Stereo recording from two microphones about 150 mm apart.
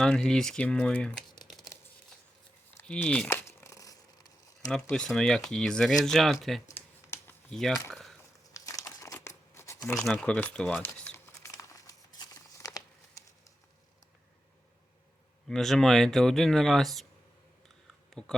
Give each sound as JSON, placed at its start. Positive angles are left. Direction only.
{"t": 0.0, "sound": "speech", "side_deg": 5}
{"t": 2.8, "sound": "crumpling", "side_deg": 10}
{"t": 4.7, "sound": "speech", "side_deg": 5}
{"t": 6.7, "sound": "computer keyboard", "side_deg": 15}
{"t": 7.5, "sound": "speech", "side_deg": 0}
{"t": 8.5, "sound": "crumpling", "side_deg": 20}
{"t": 10.0, "sound": "speech", "side_deg": 5}
{"t": 11.3, "sound": "crumpling", "side_deg": 20}
{"t": 15.4, "sound": "speech", "side_deg": 5}
{"t": 18.1, "sound": "speech", "side_deg": 5}